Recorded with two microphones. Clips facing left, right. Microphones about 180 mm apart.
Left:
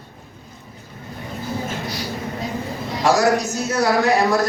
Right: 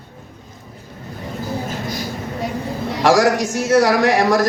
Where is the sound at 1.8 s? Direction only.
45° right (ahead or behind).